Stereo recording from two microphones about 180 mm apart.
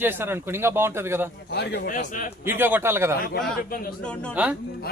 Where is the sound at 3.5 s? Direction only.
55° left (ahead or behind).